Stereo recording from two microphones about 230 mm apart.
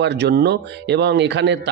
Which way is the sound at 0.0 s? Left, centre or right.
Right.